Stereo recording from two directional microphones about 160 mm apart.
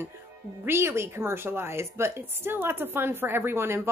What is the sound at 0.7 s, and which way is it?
A woman's voice, 15° right (ahead or behind).